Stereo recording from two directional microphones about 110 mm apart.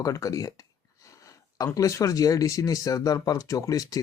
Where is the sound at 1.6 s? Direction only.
30° left (ahead or behind).